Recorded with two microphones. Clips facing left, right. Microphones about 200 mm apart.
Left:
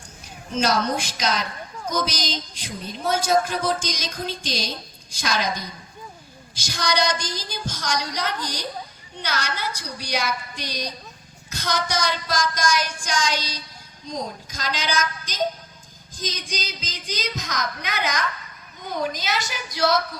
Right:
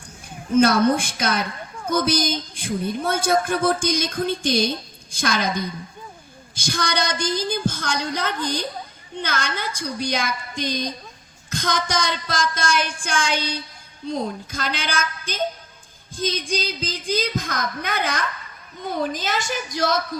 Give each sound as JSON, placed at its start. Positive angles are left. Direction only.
{"t": 0.5, "sound": "a woman's voice", "side_deg": -55}
{"t": 19.2, "sound": "speech", "side_deg": -50}